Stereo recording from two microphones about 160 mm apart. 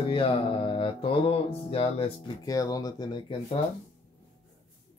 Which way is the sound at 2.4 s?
20° left (ahead or behind).